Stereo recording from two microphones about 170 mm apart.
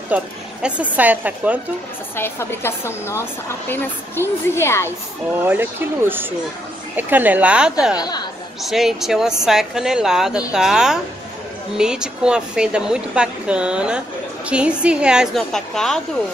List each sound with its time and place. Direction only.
0.1 s speech: 5° right (ahead or behind)
2.1 s a woman's voice: 15° left (ahead or behind)
5.3 s speech: 10° right (ahead or behind)
8.0 s speech: 25° left (ahead or behind)
8.6 s speech: centre (ahead or behind)